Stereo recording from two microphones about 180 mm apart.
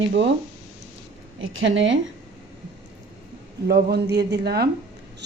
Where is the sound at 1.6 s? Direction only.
90° right.